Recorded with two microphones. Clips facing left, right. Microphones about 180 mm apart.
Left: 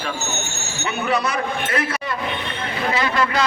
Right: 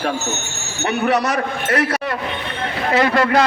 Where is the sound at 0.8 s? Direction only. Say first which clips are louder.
Right 5 dB; 70° right (ahead or behind).